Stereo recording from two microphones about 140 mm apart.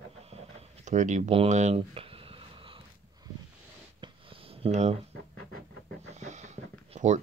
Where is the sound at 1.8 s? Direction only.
40° right (ahead or behind).